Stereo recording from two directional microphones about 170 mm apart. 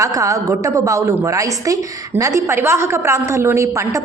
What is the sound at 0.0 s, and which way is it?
A woman's voice, 20° right (ahead or behind).